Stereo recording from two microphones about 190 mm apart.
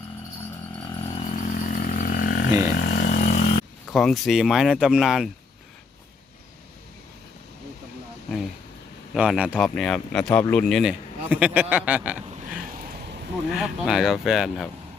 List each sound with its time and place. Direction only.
1.1 s a sound: 40° left (ahead or behind)
3.8 s speech: centre (ahead or behind)
9.1 s speech: 5° right (ahead or behind)
11.3 s speech: 10° right (ahead or behind)
13.5 s speech: centre (ahead or behind)